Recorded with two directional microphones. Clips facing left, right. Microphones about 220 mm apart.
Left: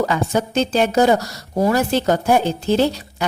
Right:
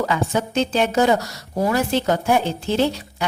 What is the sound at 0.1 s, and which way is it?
A woman's voice, 40° left (ahead or behind).